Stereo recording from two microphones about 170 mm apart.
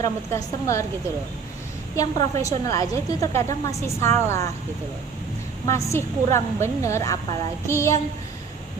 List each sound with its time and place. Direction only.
0.0 s a woman's voice: 20° left (ahead or behind)
2.0 s a woman's voice: 20° left (ahead or behind)
5.6 s a woman's voice: 15° left (ahead or behind)